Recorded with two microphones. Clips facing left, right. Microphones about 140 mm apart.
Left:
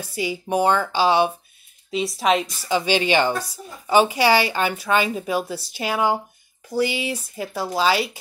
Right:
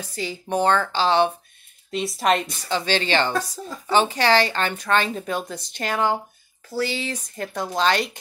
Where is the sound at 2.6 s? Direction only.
10° left (ahead or behind).